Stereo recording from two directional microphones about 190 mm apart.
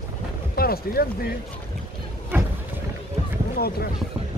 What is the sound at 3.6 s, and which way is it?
Speech, 55° left (ahead or behind).